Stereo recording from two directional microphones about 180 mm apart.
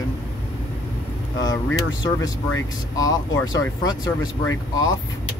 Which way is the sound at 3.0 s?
20° left (ahead or behind).